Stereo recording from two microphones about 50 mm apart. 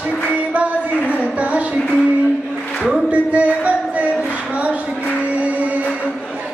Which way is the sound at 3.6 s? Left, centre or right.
Right.